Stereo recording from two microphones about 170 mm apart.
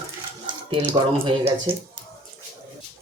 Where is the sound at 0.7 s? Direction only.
30° right (ahead or behind).